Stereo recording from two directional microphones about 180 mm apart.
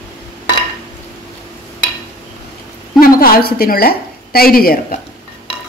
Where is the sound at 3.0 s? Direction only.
55° left (ahead or behind).